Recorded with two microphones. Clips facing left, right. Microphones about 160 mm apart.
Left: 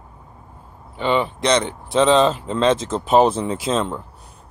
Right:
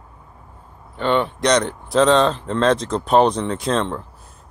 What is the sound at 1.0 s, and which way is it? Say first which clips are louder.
Speech: right 1 dB; centre (ahead or behind).